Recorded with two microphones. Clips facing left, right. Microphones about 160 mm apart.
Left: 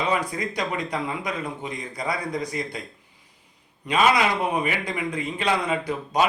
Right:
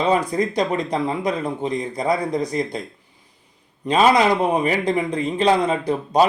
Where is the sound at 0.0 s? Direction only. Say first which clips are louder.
Right 6 dB; 35° right (ahead or behind).